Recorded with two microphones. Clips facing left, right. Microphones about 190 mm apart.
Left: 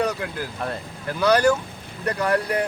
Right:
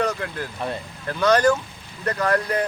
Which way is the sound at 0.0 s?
10° left (ahead or behind).